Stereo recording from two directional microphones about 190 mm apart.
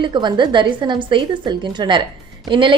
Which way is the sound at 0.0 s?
25° right (ahead or behind).